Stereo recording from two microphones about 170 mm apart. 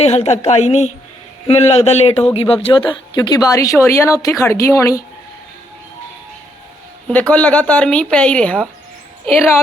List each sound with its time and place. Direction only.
0.0 s a woman's voice: 40° left (ahead or behind); by 5.0 s 20° left (ahead or behind)
7.1 s a woman's voice: 10° left (ahead or behind)